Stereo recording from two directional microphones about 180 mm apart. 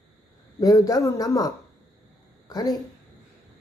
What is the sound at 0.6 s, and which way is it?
Speech, 20° left (ahead or behind).